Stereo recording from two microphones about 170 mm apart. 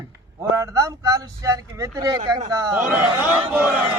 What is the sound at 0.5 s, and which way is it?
Speech, 20° right (ahead or behind).